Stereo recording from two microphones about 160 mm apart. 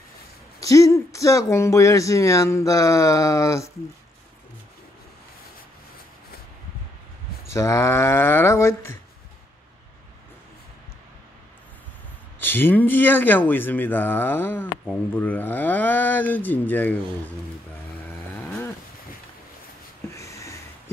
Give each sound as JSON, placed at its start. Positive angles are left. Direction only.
{"t": 0.6, "sound": "speech", "side_deg": 20}
{"t": 7.5, "sound": "speech", "side_deg": 20}
{"t": 12.4, "sound": "speech", "side_deg": 15}
{"t": 18.0, "sound": "chainsaw", "side_deg": 15}
{"t": 20.2, "sound": "a sound", "side_deg": 20}